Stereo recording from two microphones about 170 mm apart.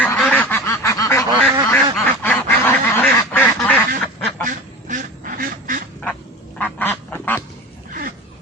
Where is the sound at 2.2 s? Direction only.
10° left (ahead or behind).